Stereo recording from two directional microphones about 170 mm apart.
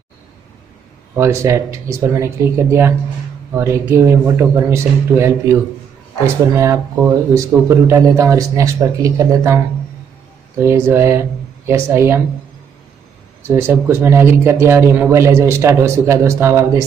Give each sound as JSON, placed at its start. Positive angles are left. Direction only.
{"t": 1.1, "sound": "speech", "side_deg": -15}
{"t": 10.6, "sound": "speech", "side_deg": -15}
{"t": 13.5, "sound": "speech", "side_deg": -15}